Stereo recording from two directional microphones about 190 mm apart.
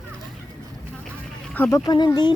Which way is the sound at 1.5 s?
10° left (ahead or behind).